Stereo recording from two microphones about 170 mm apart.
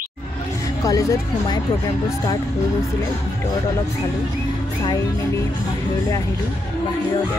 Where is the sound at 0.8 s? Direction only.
20° left (ahead or behind).